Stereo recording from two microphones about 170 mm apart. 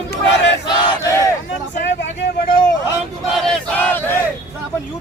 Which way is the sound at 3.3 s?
5° left (ahead or behind).